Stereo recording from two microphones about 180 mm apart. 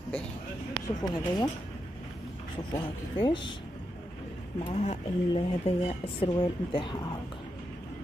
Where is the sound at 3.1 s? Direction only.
25° left (ahead or behind).